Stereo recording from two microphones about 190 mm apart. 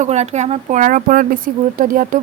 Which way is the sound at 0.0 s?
35° right (ahead or behind).